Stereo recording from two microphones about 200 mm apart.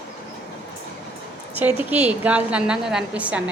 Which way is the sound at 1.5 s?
10° right (ahead or behind).